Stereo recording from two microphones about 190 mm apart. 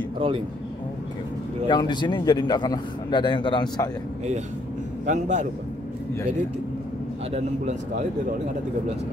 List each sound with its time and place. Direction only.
1.7 s a man's voice: 25° left (ahead or behind)
5.0 s a man's voice: 40° right (ahead or behind)